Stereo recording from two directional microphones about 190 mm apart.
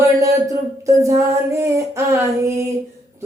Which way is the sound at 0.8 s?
15° right (ahead or behind).